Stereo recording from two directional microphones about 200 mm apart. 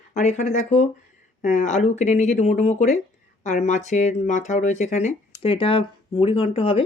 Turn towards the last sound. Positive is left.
turn(degrees=30)  # may be behind; listen again after turning